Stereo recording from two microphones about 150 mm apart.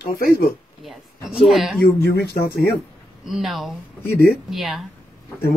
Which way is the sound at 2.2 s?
90° left.